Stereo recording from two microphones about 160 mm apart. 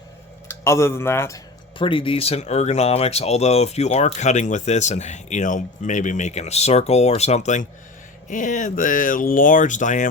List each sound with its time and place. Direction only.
0.4 s speech: 15° left (ahead or behind)
1.8 s speech: 35° left (ahead or behind); by 10.1 s 50° left (ahead or behind)